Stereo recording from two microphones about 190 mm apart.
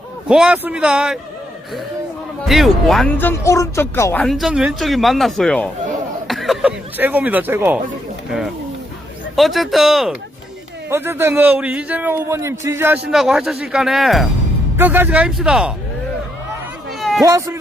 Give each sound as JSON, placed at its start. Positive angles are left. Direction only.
{"t": 0.3, "sound": "speech", "side_deg": -5}
{"t": 2.5, "sound": "speech", "side_deg": 0}
{"t": 4.2, "sound": "a man's voice", "side_deg": 0}
{"t": 17.0, "sound": "a sound", "side_deg": 0}
{"t": 17.2, "sound": "a man's voice", "side_deg": -15}